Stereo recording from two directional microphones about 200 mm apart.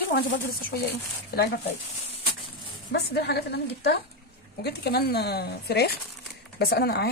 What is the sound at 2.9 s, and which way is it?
A woman's voice, 55° left (ahead or behind).